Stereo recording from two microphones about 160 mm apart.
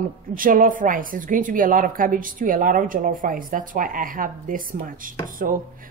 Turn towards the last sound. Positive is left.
turn(degrees=-65)  # may be behind; listen again after turning